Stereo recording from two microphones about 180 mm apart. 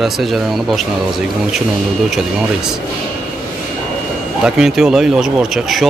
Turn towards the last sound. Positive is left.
turn(degrees=0)  # may be behind; listen again after turning